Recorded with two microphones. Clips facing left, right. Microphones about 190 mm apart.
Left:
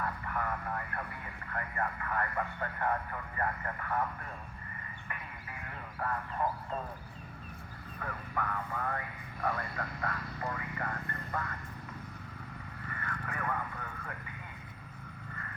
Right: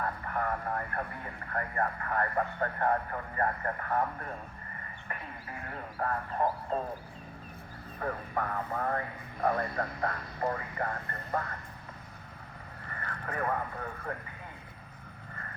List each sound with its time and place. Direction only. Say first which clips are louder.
0.0 s speech: right 3 dB; 40° right (ahead or behind)
7.9 s speech: right 5 dB; 40° right (ahead or behind)
12.9 s speech: right 3 dB; 40° right (ahead or behind)